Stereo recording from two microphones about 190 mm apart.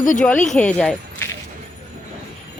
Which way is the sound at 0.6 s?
5° left (ahead or behind).